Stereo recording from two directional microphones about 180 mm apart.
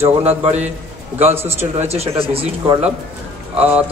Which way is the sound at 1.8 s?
35° right (ahead or behind).